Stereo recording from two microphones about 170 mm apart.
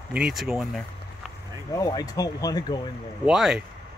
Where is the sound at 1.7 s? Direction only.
20° left (ahead or behind).